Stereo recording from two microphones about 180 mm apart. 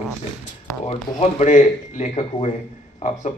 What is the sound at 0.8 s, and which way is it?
A man's voice, 35° left (ahead or behind).